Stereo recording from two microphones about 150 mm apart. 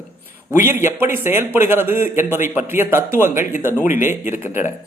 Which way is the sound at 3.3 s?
15° right (ahead or behind).